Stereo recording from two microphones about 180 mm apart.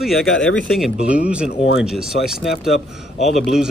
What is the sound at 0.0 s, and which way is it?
Speech, centre (ahead or behind).